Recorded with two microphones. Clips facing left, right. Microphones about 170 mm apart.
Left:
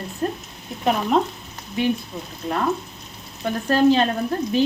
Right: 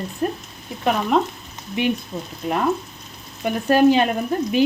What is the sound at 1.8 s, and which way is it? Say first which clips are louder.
Speech: even; 20° right (ahead or behind).